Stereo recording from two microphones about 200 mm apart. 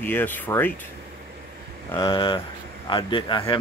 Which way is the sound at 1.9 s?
20° left (ahead or behind).